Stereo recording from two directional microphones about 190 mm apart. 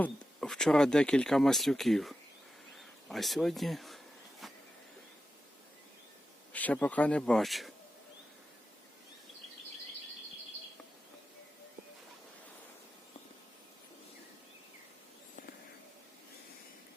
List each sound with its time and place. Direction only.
0.0 s speech: 5° left (ahead or behind)
6.5 s speech: 10° left (ahead or behind)